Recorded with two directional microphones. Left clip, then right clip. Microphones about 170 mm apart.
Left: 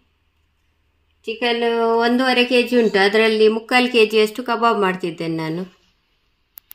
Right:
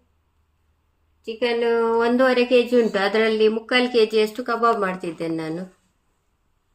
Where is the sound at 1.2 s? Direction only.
60° left (ahead or behind).